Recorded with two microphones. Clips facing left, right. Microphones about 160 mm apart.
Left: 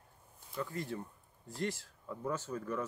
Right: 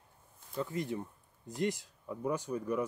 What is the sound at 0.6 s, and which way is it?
Speech, 20° right (ahead or behind).